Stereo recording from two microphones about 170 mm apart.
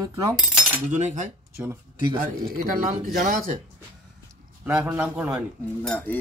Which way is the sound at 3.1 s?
50° right (ahead or behind).